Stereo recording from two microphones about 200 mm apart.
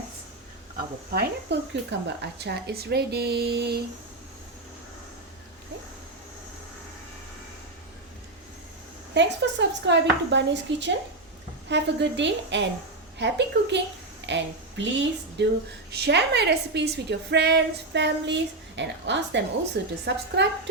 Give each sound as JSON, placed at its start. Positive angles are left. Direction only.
{"t": 1.1, "sound": "speech", "side_deg": -60}
{"t": 9.1, "sound": "a woman's voice", "side_deg": -60}